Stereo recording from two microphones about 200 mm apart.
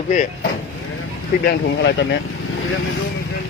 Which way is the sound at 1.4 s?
60° left (ahead or behind).